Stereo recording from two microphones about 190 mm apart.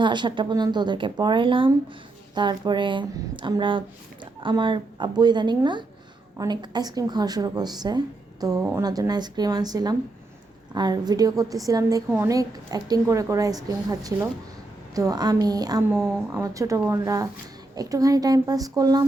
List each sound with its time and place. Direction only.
0.0 s a woman's voice: 25° right (ahead or behind)
15.9 s a woman's voice: 5° right (ahead or behind)
16.3 s a woman's voice: 15° right (ahead or behind)